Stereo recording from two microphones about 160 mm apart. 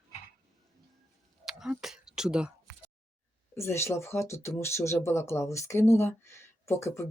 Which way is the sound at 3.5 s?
15° left (ahead or behind).